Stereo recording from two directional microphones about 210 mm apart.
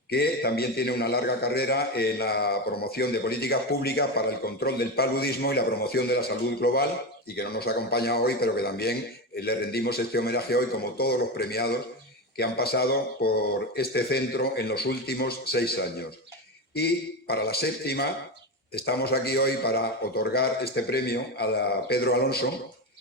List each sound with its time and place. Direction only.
0.1 s a man's voice: 50° left (ahead or behind)